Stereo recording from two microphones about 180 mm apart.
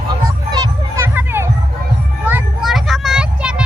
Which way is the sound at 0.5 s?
15° right (ahead or behind).